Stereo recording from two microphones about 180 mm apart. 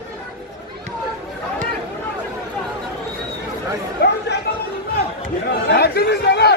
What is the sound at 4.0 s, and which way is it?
Chatter, 60° left (ahead or behind).